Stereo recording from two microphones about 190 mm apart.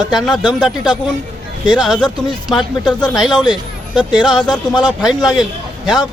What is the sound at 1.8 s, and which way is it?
Speech, centre (ahead or behind).